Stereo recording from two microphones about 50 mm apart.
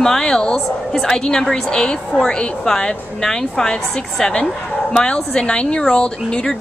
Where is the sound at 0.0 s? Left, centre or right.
Centre.